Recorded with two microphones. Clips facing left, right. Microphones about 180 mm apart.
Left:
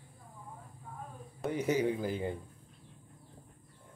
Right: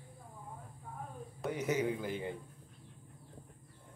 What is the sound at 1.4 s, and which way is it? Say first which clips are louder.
Speech: left 3 dB; 30° left (ahead or behind).